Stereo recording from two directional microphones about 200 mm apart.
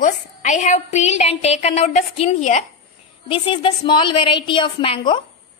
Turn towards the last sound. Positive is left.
turn(degrees=25)  # may be behind; listen again after turning